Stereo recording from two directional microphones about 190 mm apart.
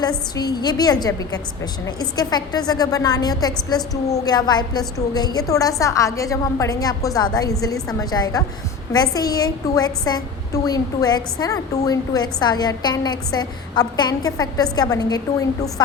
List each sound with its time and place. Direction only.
0.3 s a woman's voice: 20° left (ahead or behind)